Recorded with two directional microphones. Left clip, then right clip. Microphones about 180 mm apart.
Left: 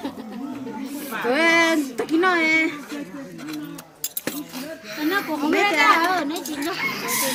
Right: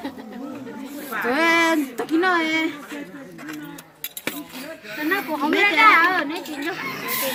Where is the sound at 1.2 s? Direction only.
50° right (ahead or behind).